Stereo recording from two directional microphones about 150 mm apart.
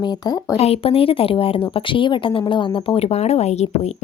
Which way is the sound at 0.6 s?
40° left (ahead or behind).